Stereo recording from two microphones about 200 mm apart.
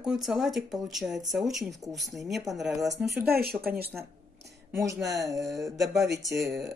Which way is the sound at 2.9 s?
55° right (ahead or behind).